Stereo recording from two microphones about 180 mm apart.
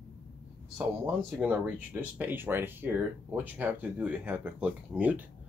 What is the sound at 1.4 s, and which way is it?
Speech, 10° right (ahead or behind).